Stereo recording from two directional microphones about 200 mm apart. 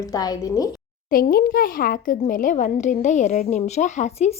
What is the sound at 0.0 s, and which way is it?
Speech, 20° left (ahead or behind).